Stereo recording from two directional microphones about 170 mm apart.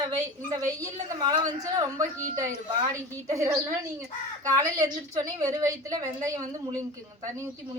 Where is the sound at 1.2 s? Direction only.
20° right (ahead or behind).